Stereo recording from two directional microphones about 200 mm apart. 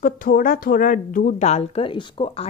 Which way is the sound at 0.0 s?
45° left (ahead or behind).